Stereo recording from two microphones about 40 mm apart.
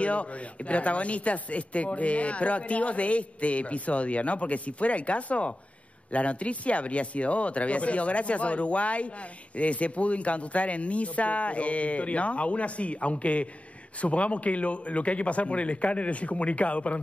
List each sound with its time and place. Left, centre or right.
0.0 s speech: left